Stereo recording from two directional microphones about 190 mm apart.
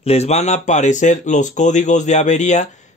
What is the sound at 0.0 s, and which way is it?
Speech, 35° left (ahead or behind).